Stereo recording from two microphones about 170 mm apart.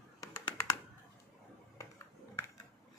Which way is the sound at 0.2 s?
20° left (ahead or behind).